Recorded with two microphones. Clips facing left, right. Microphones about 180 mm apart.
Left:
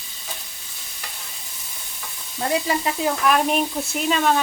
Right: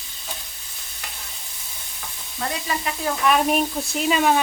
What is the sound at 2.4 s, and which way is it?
Stir, 30° left (ahead or behind).